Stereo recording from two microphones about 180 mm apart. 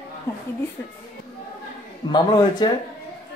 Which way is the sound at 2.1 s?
25° left (ahead or behind).